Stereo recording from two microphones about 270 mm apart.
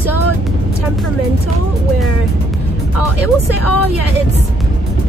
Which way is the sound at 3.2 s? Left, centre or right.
Left.